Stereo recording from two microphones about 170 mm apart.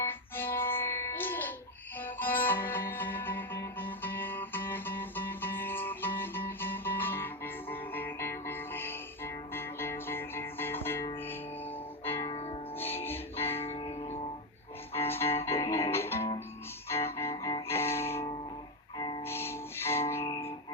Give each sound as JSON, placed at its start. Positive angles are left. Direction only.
{"t": 0.0, "sound": "music", "side_deg": 15}
{"t": 12.1, "sound": "music", "side_deg": 35}
{"t": 12.7, "sound": "music", "side_deg": 10}
{"t": 13.4, "sound": "music", "side_deg": 35}
{"t": 15.0, "sound": "music", "side_deg": 15}
{"t": 18.9, "sound": "music", "side_deg": 25}
{"t": 19.2, "sound": "music", "side_deg": 15}